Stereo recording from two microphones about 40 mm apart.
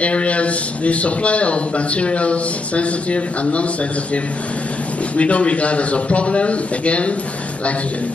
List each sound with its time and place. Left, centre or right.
0.0 s a man's voice: left
5.1 s a man's voice: left